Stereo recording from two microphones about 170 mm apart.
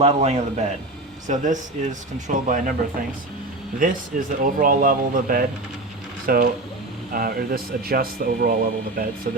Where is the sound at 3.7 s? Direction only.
50° right (ahead or behind).